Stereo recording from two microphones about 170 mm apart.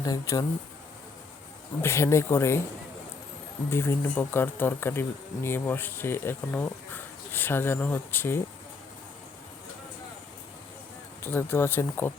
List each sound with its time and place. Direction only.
0.0 s speech: 20° left (ahead or behind)
1.8 s speech: 15° left (ahead or behind)
3.7 s speech: 15° left (ahead or behind)
11.2 s speech: 15° left (ahead or behind)